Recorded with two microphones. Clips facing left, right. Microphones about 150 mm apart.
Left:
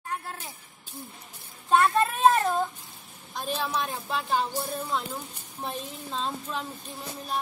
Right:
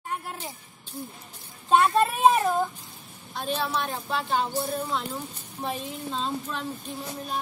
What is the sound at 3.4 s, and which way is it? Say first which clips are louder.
Speech: right 2 dB; centre (ahead or behind).